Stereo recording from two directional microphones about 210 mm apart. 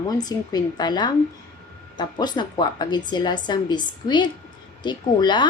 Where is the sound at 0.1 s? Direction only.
20° left (ahead or behind).